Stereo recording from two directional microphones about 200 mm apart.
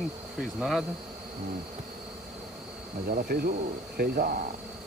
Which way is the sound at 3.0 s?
50° right (ahead or behind).